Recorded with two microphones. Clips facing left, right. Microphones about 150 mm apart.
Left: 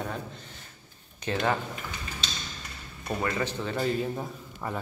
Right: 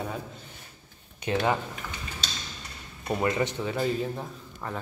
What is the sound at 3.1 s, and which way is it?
Speech, 20° right (ahead or behind).